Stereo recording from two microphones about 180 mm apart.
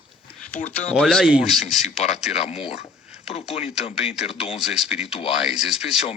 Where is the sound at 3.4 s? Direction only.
5° right (ahead or behind).